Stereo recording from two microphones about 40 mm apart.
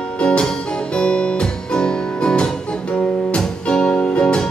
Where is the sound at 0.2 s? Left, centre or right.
Left.